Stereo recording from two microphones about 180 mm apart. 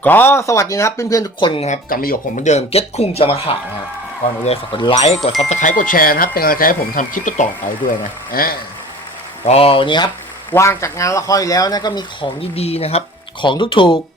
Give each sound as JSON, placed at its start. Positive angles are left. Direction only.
{"t": 0.0, "sound": "speech", "side_deg": 10}
{"t": 1.6, "sound": "speech", "side_deg": 45}
{"t": 9.5, "sound": "speech", "side_deg": 30}
{"t": 10.5, "sound": "speech", "side_deg": 15}